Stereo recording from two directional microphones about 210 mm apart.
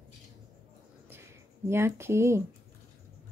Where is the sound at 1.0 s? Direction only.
10° right (ahead or behind).